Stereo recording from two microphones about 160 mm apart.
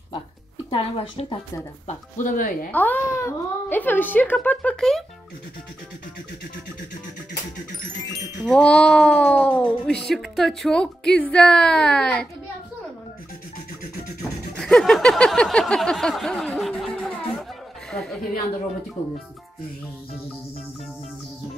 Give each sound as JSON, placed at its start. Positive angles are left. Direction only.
{"t": 0.7, "sound": "speech", "side_deg": 35}
{"t": 1.9, "sound": "speech", "side_deg": 55}
{"t": 2.7, "sound": "a child's voice", "side_deg": 10}
{"t": 8.5, "sound": "speech", "side_deg": 5}
{"t": 14.5, "sound": "a sound", "side_deg": 5}